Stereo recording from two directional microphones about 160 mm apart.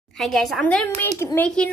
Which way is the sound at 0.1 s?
Centre (ahead or behind).